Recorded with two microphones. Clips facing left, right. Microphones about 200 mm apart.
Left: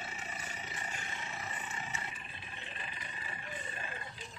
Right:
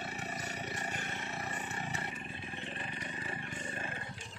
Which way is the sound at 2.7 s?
50° right (ahead or behind).